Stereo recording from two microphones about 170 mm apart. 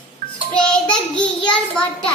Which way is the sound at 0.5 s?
5° left (ahead or behind).